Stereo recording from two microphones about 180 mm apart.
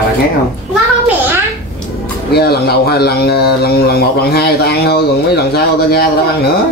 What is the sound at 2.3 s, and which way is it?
A man's voice, 60° left (ahead or behind).